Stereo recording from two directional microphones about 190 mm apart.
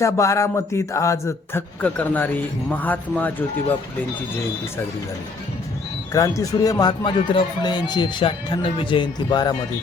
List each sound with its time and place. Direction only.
0.0 s a man's voice: 15° left (ahead or behind)
6.1 s speech: 15° left (ahead or behind)